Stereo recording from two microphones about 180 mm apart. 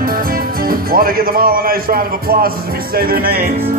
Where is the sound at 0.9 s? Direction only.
55° right (ahead or behind).